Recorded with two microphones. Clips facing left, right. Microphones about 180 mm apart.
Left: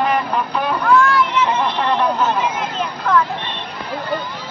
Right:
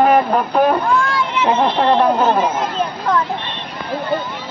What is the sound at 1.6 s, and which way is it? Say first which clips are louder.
Speech: right 4 dB; 50° right (ahead or behind).